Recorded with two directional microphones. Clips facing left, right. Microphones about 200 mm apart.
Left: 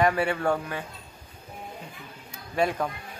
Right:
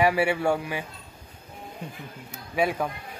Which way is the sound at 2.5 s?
5° right (ahead or behind).